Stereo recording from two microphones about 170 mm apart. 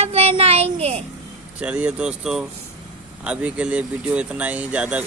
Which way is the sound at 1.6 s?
5° right (ahead or behind).